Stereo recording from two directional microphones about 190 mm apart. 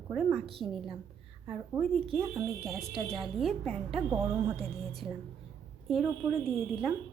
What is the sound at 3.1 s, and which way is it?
Speech, centre (ahead or behind).